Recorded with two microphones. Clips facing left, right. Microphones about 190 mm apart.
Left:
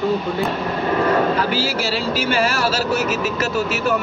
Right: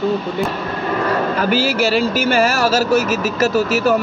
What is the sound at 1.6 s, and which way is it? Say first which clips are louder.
Speech: right 5 dB; 50° right (ahead or behind).